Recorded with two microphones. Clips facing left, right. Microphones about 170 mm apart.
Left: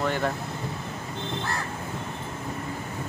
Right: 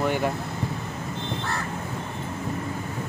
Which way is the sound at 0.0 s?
10° right (ahead or behind).